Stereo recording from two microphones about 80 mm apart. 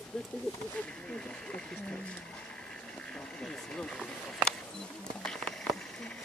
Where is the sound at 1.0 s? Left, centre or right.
Centre.